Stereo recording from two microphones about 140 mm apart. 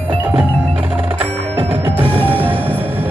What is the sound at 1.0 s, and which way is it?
Music, 15° right (ahead or behind).